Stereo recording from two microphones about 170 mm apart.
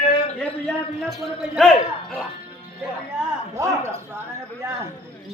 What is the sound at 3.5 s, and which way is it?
Speech, 15° right (ahead or behind).